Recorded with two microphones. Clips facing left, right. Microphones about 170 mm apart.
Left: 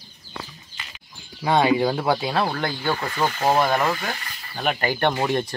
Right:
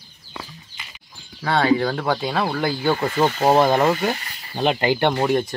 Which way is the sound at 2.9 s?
25° right (ahead or behind).